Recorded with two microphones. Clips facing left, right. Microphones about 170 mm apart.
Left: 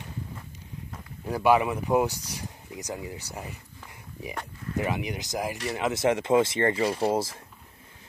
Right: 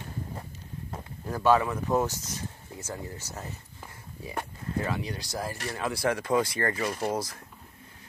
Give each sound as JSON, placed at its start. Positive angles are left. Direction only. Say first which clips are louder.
{"t": 1.2, "sound": "speech", "louder": "left 1 dB", "side_deg": 10}
{"t": 4.7, "sound": "speech", "louder": "left 2 dB", "side_deg": 15}